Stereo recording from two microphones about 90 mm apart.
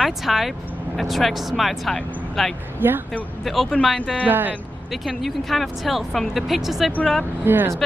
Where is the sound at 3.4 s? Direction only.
Centre (ahead or behind).